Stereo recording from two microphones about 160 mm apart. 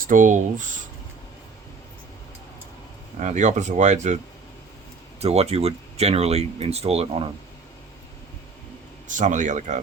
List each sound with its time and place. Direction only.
0.0 s speech: 55° right (ahead or behind)
3.2 s speech: 50° right (ahead or behind)
5.2 s speech: 40° right (ahead or behind)
9.0 s speech: 50° right (ahead or behind)